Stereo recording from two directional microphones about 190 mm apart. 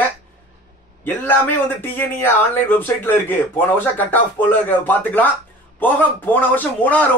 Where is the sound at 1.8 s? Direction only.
10° left (ahead or behind).